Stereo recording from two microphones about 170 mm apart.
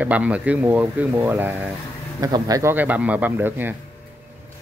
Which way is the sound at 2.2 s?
25° right (ahead or behind).